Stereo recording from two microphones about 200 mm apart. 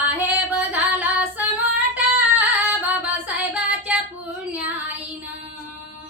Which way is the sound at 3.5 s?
5° right (ahead or behind).